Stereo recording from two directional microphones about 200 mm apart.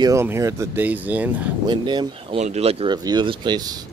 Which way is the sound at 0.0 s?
15° right (ahead or behind).